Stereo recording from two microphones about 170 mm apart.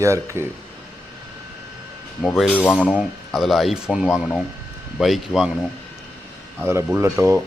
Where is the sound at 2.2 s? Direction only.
Centre (ahead or behind).